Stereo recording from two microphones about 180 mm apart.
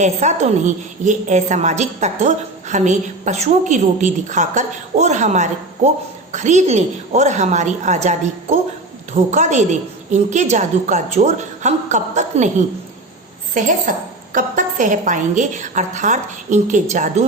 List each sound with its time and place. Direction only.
0.0 s a woman's voice: 40° right (ahead or behind)